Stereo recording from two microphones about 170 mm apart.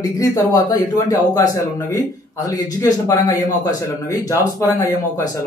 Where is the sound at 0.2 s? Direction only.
20° left (ahead or behind).